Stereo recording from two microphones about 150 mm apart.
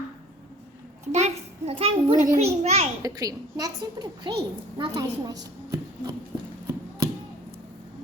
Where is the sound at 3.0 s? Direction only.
25° right (ahead or behind).